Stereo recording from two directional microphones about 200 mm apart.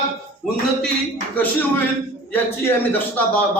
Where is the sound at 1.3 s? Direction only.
10° left (ahead or behind).